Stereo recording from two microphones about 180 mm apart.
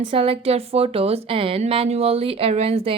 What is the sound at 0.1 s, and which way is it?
A woman's voice, 30° right (ahead or behind).